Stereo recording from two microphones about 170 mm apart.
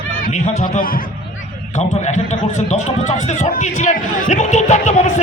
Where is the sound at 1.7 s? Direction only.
40° left (ahead or behind).